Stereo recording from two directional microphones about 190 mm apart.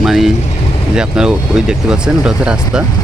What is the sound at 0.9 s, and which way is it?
Speech, 5° right (ahead or behind).